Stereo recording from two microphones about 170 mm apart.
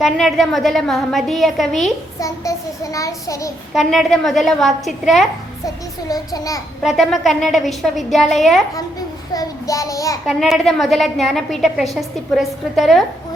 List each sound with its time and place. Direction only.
0.0 s a woman's voice: centre (ahead or behind)
2.1 s a child's voice: 20° left (ahead or behind)
3.8 s a woman's voice: centre (ahead or behind)
5.6 s a child's voice: 20° left (ahead or behind)
6.8 s a woman's voice: centre (ahead or behind)
8.7 s a child's voice: 20° left (ahead or behind)
10.2 s a woman's voice: centre (ahead or behind)